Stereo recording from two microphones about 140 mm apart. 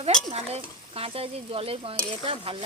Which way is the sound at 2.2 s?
40° right (ahead or behind).